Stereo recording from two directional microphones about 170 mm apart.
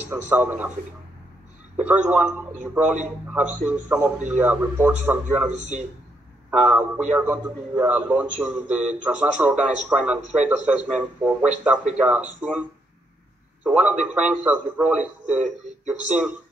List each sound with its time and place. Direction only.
0.1 s a man's voice: 10° right (ahead or behind)
1.8 s a man's voice: 10° right (ahead or behind)
5.5 s a man's voice: 45° right (ahead or behind)
6.5 s a man's voice: 5° right (ahead or behind)
13.7 s a man's voice: 10° right (ahead or behind)